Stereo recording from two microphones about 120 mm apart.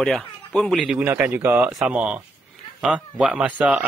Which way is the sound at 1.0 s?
15° right (ahead or behind).